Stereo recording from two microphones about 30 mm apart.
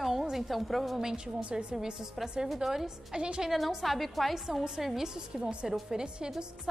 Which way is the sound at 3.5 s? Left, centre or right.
Centre.